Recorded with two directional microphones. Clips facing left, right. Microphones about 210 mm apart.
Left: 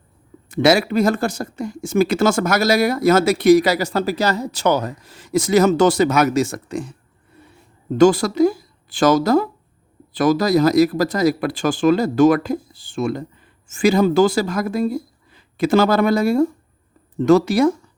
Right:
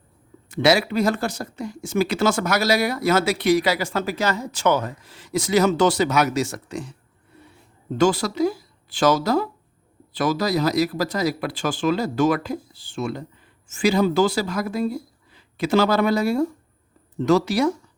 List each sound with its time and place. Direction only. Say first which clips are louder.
0.5 s speech: left 4 dB; 50° left (ahead or behind)
7.9 s speech: left 6 dB; 50° left (ahead or behind)